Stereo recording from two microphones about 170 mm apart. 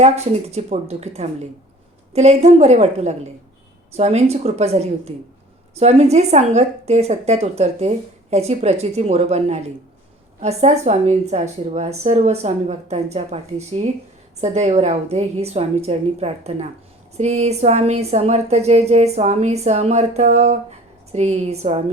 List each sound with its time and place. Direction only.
0.0 s a woman's voice: 40° right (ahead or behind)